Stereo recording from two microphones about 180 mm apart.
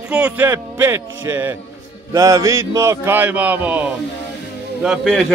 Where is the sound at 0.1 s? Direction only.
10° right (ahead or behind).